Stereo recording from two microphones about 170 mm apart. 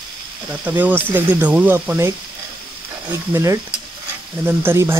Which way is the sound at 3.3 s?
15° right (ahead or behind).